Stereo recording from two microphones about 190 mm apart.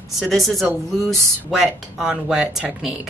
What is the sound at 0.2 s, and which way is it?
Speech, centre (ahead or behind).